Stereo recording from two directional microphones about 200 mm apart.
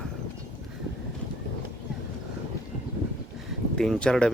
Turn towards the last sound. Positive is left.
turn(degrees=5)  # may be behind; listen again after turning